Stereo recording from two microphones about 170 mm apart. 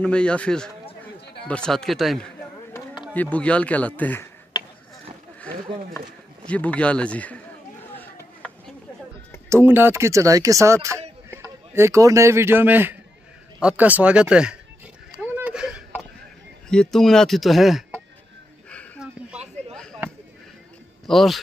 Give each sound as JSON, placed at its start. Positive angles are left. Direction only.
{"t": 0.0, "sound": "speech", "side_deg": 5}
{"t": 5.9, "sound": "speech", "side_deg": 10}
{"t": 7.9, "sound": "a sound", "side_deg": 10}
{"t": 9.5, "sound": "speech", "side_deg": -15}
{"t": 15.3, "sound": "a sound", "side_deg": -5}
{"t": 16.6, "sound": "speech", "side_deg": 5}
{"t": 19.7, "sound": "chop", "side_deg": 5}
{"t": 21.1, "sound": "speech", "side_deg": 0}